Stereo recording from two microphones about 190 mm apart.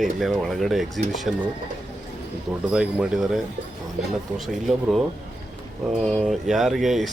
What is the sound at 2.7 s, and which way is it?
Speech, 5° right (ahead or behind).